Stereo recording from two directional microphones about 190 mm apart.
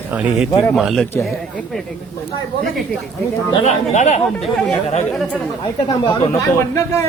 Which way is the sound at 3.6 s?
40° left (ahead or behind).